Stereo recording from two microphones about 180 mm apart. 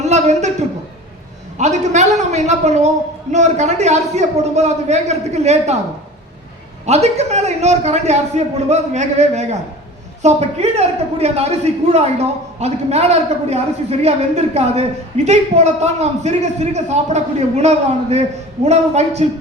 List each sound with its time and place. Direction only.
0.0 s a sound: 40° right (ahead or behind)
1.5 s a man's voice: 40° right (ahead or behind)
6.8 s a man's voice: 40° right (ahead or behind)